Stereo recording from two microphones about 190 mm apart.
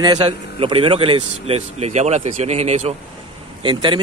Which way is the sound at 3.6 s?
25° right (ahead or behind).